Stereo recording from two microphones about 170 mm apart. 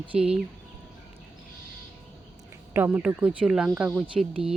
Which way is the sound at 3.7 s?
15° right (ahead or behind).